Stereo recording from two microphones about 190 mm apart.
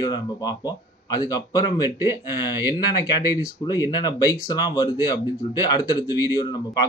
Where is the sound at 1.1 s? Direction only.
20° left (ahead or behind).